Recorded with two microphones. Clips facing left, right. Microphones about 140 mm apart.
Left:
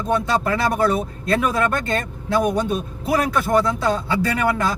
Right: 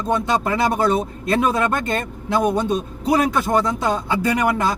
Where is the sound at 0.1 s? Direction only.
20° right (ahead or behind).